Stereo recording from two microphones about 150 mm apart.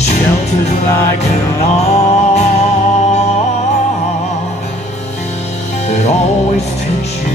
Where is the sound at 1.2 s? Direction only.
45° left (ahead or behind).